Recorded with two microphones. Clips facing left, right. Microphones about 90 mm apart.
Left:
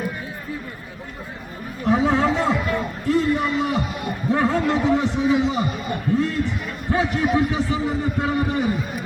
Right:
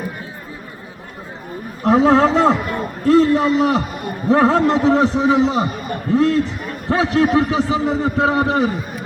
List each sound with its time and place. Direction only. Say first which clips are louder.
1.8 s chatter: right 6 dB; 90° right
3.1 s a man's voice: right 7 dB; 90° right